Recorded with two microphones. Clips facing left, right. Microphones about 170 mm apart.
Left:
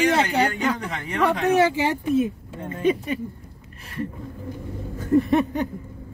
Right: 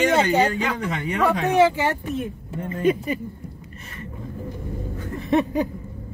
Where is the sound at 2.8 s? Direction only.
5° right (ahead or behind).